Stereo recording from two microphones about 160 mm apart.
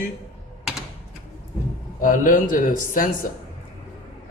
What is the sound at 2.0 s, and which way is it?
Speech, 60° left (ahead or behind).